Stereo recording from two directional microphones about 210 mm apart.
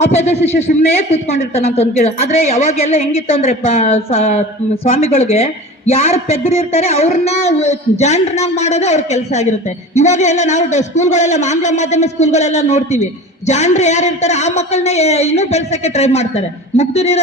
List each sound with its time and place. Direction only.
0.0 s a woman's voice: 30° left (ahead or behind)